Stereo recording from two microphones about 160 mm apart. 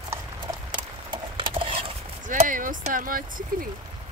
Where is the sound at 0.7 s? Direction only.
30° right (ahead or behind).